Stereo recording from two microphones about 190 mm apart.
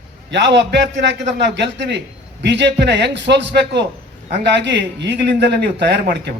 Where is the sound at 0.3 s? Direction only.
65° right (ahead or behind).